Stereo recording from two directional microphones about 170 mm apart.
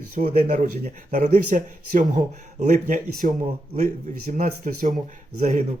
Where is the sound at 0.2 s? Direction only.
45° right (ahead or behind).